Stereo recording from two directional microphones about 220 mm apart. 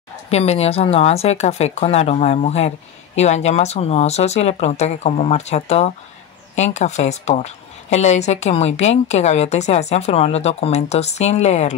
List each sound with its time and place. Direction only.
0.3 s speech: 30° left (ahead or behind)